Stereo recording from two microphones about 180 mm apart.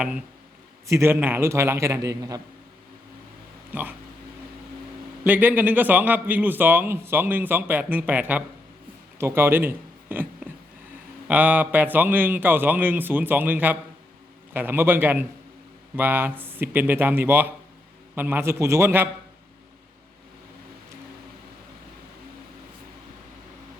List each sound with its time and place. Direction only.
0.9 s a man's voice: 15° right (ahead or behind)
3.7 s speech: 10° right (ahead or behind)
5.2 s a man's voice: 10° right (ahead or behind)
9.1 s a sound: 15° right (ahead or behind)
11.3 s a man's voice: 10° right (ahead or behind)